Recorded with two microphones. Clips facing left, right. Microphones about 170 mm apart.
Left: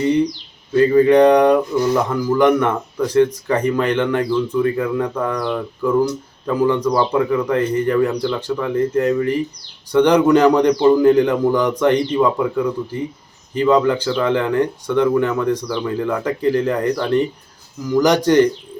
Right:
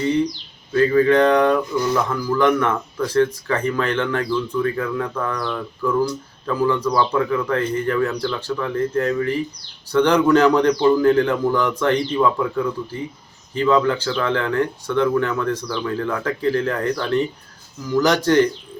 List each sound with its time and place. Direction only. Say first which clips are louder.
0.7 s speech: left 3 dB; 15° left (ahead or behind)